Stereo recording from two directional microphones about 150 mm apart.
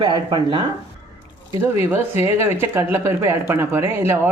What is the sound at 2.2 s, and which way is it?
Speech, 15° right (ahead or behind).